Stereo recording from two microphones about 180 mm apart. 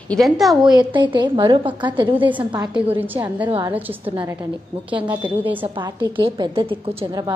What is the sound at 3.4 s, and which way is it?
Speech, 25° right (ahead or behind).